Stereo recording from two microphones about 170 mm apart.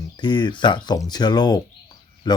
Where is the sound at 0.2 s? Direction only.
25° left (ahead or behind).